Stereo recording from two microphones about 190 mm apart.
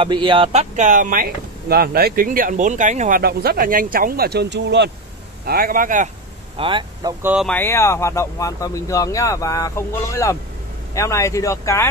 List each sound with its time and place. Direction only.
0.0 s speech: 25° right (ahead or behind); by 4.9 s 65° right (ahead or behind)
5.4 s speech: 50° right (ahead or behind)
6.6 s speech: 25° right (ahead or behind)
7.4 s speech: 10° left (ahead or behind)